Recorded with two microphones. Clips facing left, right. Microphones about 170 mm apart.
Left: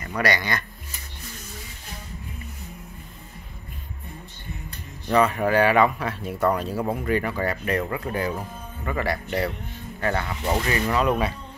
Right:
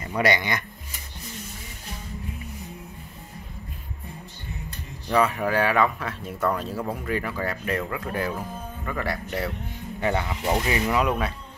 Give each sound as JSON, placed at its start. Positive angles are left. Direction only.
{"t": 0.2, "sound": "speech", "side_deg": -20}
{"t": 5.0, "sound": "speech", "side_deg": -5}
{"t": 9.9, "sound": "speech", "side_deg": -15}